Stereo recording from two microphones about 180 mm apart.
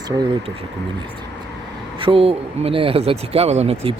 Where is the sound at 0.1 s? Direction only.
25° right (ahead or behind).